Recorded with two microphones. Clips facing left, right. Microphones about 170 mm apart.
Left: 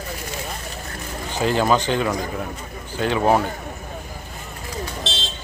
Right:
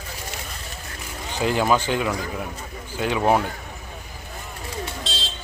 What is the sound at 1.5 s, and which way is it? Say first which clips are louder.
Speech: left 2 dB; 10° right (ahead or behind).